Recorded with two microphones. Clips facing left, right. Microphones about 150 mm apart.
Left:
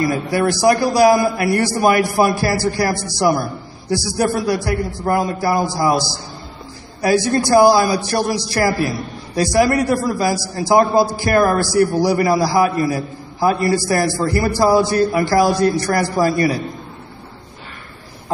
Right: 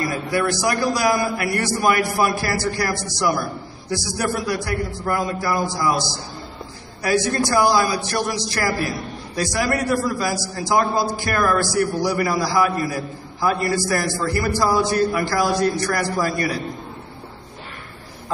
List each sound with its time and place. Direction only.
0.3 s a man's voice: 35° left (ahead or behind)